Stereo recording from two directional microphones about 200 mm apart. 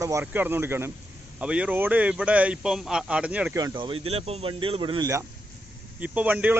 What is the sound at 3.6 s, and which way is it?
Speech, 25° right (ahead or behind).